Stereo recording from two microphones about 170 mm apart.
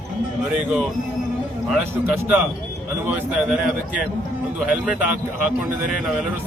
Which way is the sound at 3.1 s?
5° right (ahead or behind).